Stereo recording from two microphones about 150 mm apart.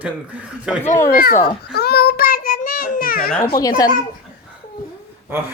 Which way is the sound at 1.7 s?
90° left.